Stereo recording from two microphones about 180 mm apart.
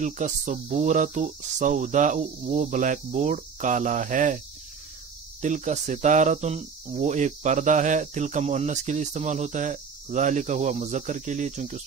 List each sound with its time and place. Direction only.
0.0 s cricket: 45° right (ahead or behind)
5.4 s speech: 45° right (ahead or behind)